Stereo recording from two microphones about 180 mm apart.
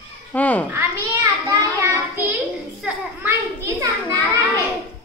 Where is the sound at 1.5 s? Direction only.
10° right (ahead or behind).